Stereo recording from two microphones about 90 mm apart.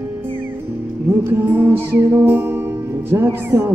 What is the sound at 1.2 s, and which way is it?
Music, 25° right (ahead or behind).